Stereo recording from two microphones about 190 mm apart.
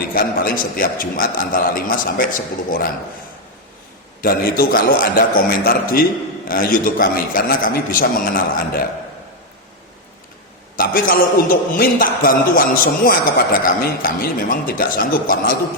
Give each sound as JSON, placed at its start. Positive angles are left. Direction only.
{"t": 0.1, "sound": "a man's voice", "side_deg": 50}
{"t": 4.2, "sound": "a man's voice", "side_deg": 50}
{"t": 10.8, "sound": "a man's voice", "side_deg": 50}